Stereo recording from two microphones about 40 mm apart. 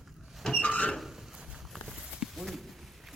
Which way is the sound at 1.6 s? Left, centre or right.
Centre.